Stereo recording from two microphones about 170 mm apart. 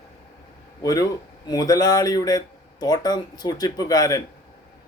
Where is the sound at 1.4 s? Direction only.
20° left (ahead or behind).